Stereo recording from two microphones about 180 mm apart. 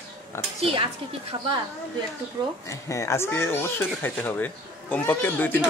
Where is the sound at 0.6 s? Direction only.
30° right (ahead or behind).